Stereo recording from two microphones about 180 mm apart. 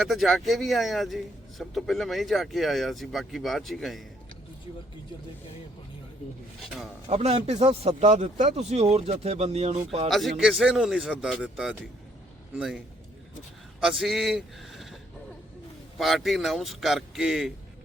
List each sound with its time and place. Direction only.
0.0 s speech: centre (ahead or behind)
7.1 s speech: 35° right (ahead or behind)
10.1 s speech: centre (ahead or behind)
13.8 s speech: centre (ahead or behind)
16.0 s speech: centre (ahead or behind)